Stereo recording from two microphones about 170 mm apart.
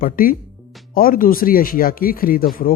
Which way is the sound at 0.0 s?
55° left (ahead or behind).